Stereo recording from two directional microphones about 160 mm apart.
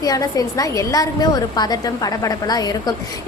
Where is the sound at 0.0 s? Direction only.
20° left (ahead or behind).